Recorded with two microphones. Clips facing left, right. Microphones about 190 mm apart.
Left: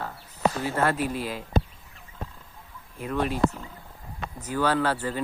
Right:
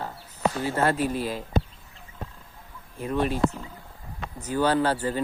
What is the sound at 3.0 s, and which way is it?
Speech, 25° right (ahead or behind).